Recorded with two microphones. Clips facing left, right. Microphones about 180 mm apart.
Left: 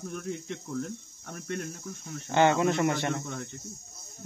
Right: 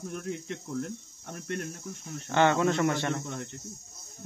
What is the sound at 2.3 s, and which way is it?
Speech, 15° left (ahead or behind).